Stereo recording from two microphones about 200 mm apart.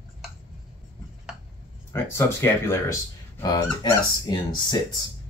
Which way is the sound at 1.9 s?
15° left (ahead or behind).